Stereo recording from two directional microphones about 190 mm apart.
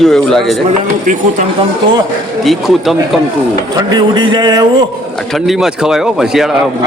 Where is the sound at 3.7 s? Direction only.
20° right (ahead or behind).